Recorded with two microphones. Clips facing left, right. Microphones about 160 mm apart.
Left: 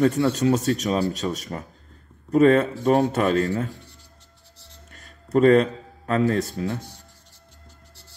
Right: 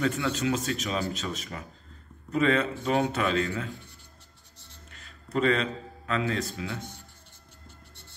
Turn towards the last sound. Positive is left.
turn(degrees=45)  # may be behind; listen again after turning